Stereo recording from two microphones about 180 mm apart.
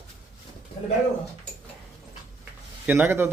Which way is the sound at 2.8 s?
10° right (ahead or behind).